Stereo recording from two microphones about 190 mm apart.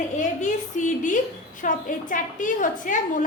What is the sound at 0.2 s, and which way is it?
A woman's voice, 40° left (ahead or behind).